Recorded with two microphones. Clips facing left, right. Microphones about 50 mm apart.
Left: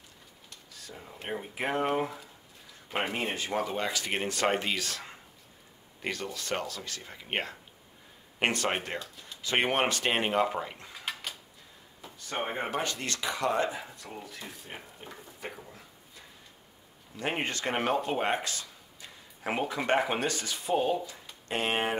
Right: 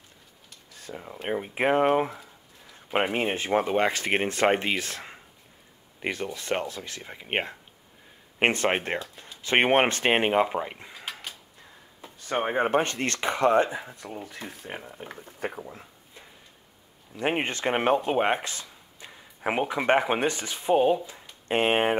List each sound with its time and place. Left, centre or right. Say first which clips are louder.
0.7 s speech: right 7 dB; right
12.0 s speech: right 6 dB; right
13.7 s speech: right 4 dB; right
14.2 s speech: right 5 dB; right